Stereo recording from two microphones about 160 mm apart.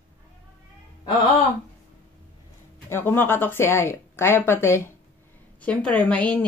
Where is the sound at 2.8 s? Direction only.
15° left (ahead or behind).